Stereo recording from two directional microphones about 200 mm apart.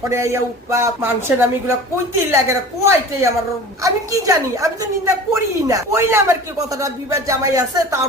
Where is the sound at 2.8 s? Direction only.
15° right (ahead or behind).